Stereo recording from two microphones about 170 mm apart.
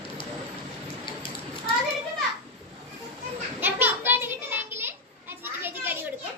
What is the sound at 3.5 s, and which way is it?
Children playing, 10° right (ahead or behind).